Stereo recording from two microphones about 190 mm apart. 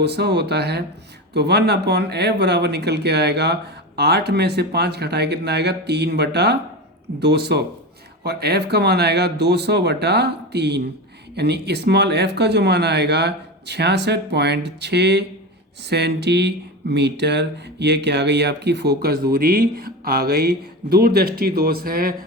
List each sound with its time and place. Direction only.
0.0 s speech: 60° right (ahead or behind)